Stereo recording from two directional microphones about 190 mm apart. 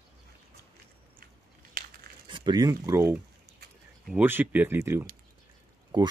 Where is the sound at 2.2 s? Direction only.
25° right (ahead or behind).